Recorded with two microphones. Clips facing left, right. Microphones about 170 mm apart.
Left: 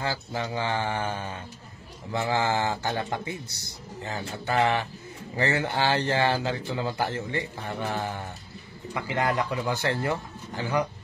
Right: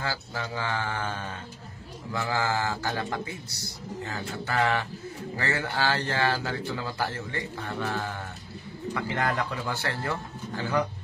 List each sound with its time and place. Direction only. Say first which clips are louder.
0.0 s a man's voice: left 3 dB; 20° left (ahead or behind)